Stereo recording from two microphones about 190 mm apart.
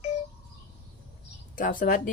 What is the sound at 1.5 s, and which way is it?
Speech, 45° left (ahead or behind).